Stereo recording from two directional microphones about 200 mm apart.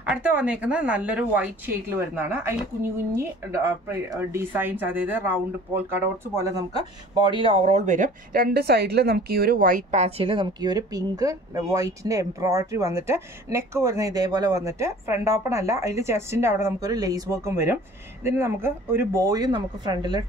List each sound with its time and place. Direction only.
0.0 s a woman's voice: 5° right (ahead or behind)
7.2 s a woman's voice: 25° right (ahead or behind)